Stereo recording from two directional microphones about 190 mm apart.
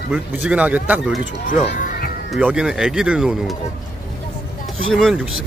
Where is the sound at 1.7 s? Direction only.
45° left (ahead or behind).